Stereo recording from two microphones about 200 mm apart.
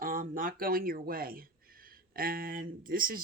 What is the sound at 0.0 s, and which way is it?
Speech, 45° right (ahead or behind).